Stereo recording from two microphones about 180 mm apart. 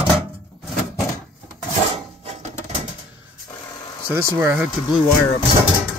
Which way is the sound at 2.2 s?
35° right (ahead or behind).